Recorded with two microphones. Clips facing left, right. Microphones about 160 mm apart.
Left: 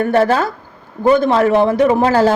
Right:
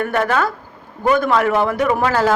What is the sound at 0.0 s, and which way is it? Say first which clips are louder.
Speech: left 4 dB; 30° left (ahead or behind).